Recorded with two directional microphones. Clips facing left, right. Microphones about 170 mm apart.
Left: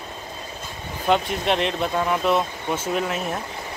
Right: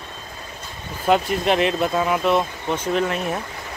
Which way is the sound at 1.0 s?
Centre (ahead or behind).